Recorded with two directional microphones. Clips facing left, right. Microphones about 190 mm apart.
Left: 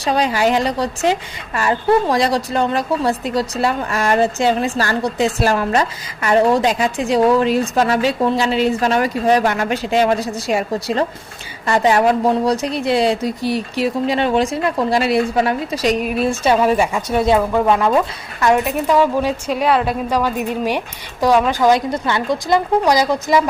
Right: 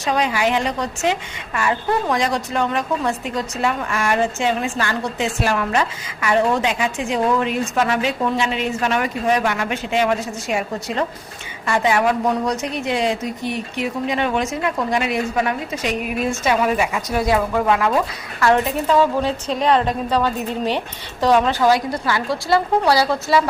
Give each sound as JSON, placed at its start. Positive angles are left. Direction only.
{"t": 0.0, "sound": "a woman's voice", "side_deg": 35}
{"t": 18.3, "sound": "a woman's voice", "side_deg": 15}